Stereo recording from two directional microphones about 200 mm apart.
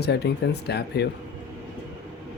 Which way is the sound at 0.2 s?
60° left (ahead or behind).